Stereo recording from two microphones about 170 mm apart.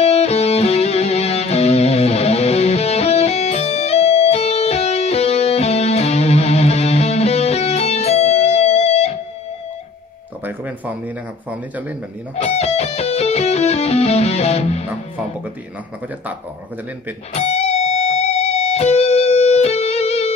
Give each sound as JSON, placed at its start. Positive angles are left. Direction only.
{"t": 0.0, "sound": "music", "side_deg": 40}
{"t": 10.4, "sound": "a sound", "side_deg": -10}
{"t": 12.4, "sound": "music", "side_deg": 40}
{"t": 17.3, "sound": "music", "side_deg": 40}